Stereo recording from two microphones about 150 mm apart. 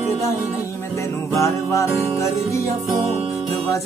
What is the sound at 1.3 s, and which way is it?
Music, 20° left (ahead or behind).